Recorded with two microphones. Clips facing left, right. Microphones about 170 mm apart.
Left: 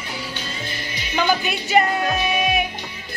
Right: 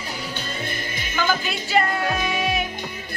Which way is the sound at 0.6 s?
50° right (ahead or behind).